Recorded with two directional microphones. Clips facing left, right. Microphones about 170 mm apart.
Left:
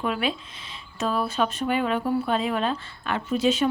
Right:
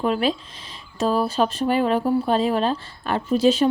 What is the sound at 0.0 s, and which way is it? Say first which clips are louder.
Speech: right 5 dB; 35° right (ahead or behind).